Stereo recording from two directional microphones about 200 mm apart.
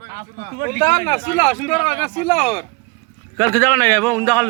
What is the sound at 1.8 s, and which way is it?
Speech, 30° left (ahead or behind).